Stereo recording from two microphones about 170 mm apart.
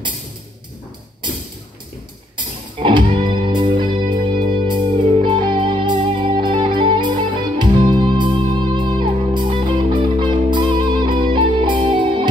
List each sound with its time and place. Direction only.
2.3 s music: 30° right (ahead or behind)